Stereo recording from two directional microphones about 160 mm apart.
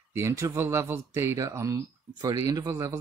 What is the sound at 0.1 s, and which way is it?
Speech, 20° right (ahead or behind).